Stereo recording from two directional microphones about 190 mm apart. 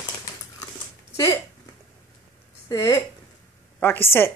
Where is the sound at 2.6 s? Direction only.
15° left (ahead or behind).